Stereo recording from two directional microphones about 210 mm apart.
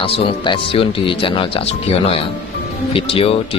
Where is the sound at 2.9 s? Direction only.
25° left (ahead or behind).